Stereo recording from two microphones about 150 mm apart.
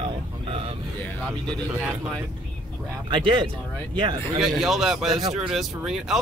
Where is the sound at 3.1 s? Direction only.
35° right (ahead or behind).